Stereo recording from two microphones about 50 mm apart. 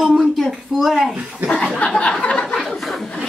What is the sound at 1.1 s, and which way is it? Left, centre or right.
Speech, right.